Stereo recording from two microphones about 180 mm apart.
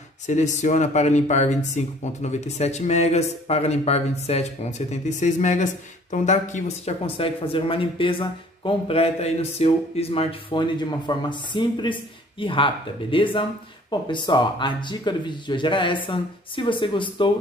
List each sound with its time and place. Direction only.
0.3 s speech: 40° left (ahead or behind)